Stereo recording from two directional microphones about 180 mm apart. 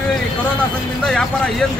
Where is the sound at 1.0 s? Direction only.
5° left (ahead or behind).